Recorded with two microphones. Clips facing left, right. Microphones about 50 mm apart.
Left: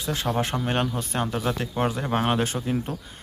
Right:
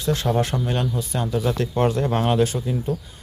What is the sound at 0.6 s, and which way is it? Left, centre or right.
Speech, left.